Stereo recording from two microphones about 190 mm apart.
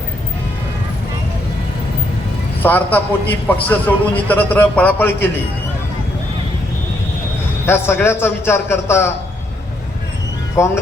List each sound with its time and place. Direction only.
2.6 s a man's voice: 10° left (ahead or behind)
7.6 s a man's voice: 10° left (ahead or behind)
10.6 s a man's voice: 15° left (ahead or behind)